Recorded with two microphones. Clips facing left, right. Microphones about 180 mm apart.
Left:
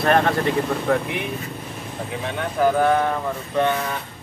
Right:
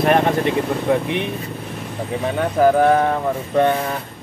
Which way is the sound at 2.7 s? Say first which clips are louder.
Right 4 dB; 35° right (ahead or behind).